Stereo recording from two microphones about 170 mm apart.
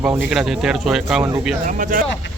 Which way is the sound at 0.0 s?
10° right (ahead or behind).